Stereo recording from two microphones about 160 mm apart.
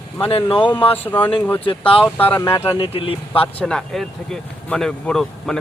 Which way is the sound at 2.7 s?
35° left (ahead or behind).